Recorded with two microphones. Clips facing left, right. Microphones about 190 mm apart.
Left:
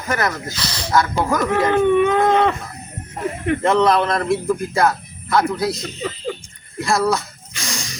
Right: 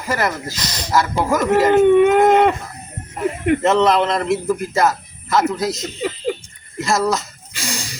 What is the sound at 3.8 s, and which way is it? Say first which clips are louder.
Speech: right 1 dB; 20° right (ahead or behind).